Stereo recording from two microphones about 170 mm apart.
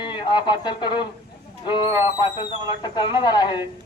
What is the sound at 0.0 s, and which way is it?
Speech, 25° left (ahead or behind).